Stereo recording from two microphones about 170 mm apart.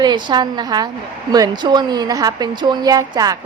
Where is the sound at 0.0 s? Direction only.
25° right (ahead or behind).